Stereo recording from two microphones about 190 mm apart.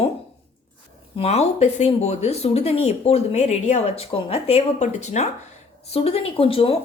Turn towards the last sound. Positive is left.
turn(degrees=30)  # may be behind; listen again after turning